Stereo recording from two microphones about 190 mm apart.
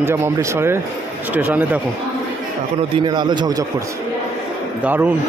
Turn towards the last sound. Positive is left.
turn(degrees=-10)  # may be behind; listen again after turning